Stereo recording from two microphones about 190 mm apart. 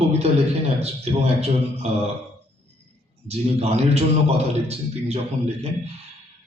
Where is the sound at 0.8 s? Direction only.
35° right (ahead or behind).